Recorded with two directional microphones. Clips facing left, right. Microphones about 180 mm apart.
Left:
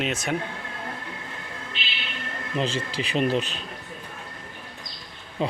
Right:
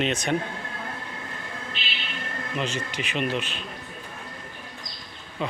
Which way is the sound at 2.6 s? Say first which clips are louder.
Left 3 dB; 30° left (ahead or behind).